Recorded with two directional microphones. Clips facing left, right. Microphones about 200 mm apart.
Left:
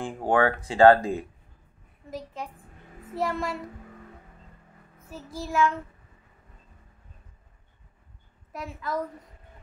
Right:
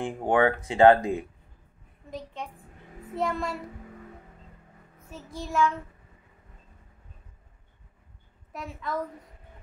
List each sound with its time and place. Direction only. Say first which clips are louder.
0.3 s speech: even; 20° right (ahead or behind)
2.0 s child singing: left 1 dB; 5° left (ahead or behind)
5.1 s child singing: left 1 dB; 5° left (ahead or behind)
8.5 s child singing: left 1 dB; centre (ahead or behind)